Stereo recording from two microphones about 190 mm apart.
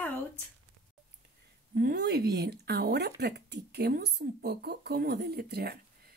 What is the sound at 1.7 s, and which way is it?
A woman's voice, 55° right (ahead or behind).